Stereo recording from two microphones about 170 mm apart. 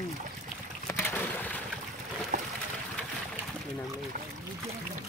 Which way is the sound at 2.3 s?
50° right (ahead or behind).